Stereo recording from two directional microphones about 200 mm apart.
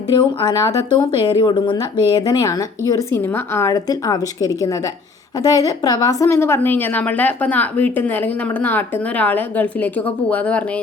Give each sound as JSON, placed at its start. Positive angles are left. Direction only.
{"t": 0.2, "sound": "a woman's voice", "side_deg": 20}